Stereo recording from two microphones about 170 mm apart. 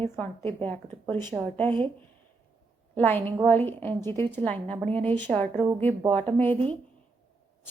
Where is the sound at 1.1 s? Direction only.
25° right (ahead or behind).